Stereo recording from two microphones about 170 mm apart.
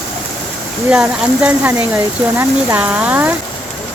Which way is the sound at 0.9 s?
5° right (ahead or behind).